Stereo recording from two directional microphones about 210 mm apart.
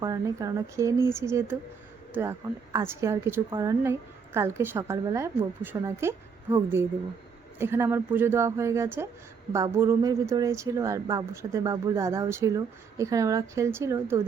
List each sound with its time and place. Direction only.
0.0 s a woman's voice: 15° right (ahead or behind)
2.7 s a woman's voice: 15° right (ahead or behind)